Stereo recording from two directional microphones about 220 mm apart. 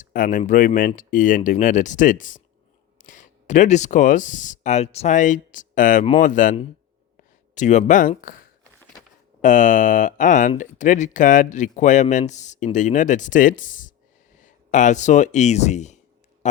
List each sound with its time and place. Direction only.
0.0 s speech: 35° left (ahead or behind)
9.4 s speech: 35° left (ahead or behind)